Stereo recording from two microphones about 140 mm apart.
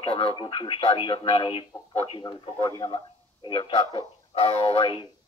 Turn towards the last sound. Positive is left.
turn(degrees=35)  # may be behind; listen again after turning